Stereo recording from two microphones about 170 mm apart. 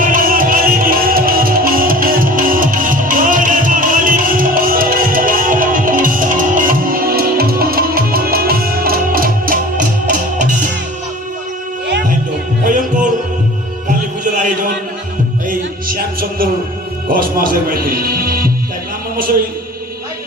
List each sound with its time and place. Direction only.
0.0 s music: 55° right (ahead or behind)
12.6 s music: 50° right (ahead or behind)
17.1 s music: 55° right (ahead or behind)